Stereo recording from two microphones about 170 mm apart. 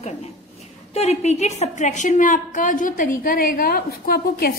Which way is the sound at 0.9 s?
40° left (ahead or behind).